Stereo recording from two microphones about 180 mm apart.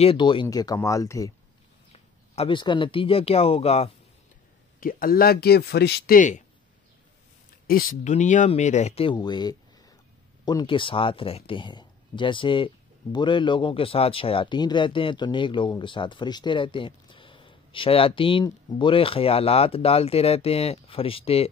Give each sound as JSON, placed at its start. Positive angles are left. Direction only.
{"t": 0.0, "sound": "speech", "side_deg": 30}
{"t": 1.9, "sound": "speech", "side_deg": 35}
{"t": 4.7, "sound": "speech", "side_deg": 50}
{"t": 7.6, "sound": "speech", "side_deg": 55}